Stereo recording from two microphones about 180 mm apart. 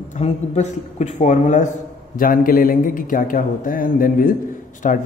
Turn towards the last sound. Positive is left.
turn(degrees=45)  # may be behind; listen again after turning